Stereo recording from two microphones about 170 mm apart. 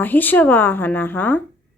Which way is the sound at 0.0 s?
10° left (ahead or behind).